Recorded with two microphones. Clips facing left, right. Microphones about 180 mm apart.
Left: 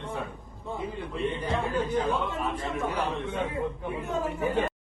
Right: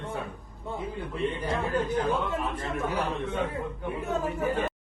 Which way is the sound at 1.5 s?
Centre (ahead or behind).